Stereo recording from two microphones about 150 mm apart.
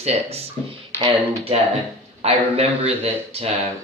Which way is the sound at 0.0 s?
45° right (ahead or behind).